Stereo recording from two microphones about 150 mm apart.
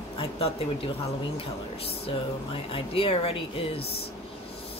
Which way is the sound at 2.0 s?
35° left (ahead or behind).